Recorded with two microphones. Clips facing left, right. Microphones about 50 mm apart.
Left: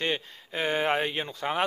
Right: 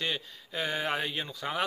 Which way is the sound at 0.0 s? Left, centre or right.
Left.